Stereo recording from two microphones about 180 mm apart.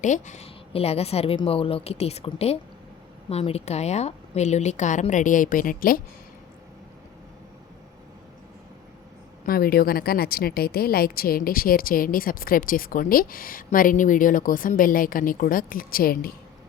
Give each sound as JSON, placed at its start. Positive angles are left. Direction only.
{"t": 0.0, "sound": "a woman's voice", "side_deg": 45}
{"t": 9.5, "sound": "speech", "side_deg": 55}